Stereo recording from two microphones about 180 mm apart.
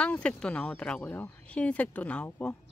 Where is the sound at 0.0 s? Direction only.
5° left (ahead or behind).